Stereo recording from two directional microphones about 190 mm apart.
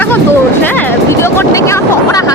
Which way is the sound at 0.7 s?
10° left (ahead or behind).